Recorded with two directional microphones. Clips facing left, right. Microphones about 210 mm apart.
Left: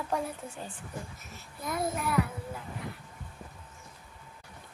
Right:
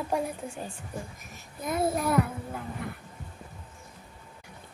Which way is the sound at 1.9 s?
40° right (ahead or behind).